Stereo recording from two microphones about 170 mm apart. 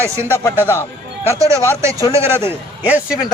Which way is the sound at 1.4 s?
20° right (ahead or behind).